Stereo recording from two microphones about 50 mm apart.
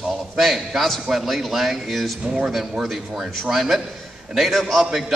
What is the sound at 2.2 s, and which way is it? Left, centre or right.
Speech, centre.